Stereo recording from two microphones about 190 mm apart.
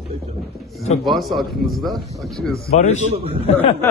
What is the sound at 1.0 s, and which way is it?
A man's voice, centre (ahead or behind).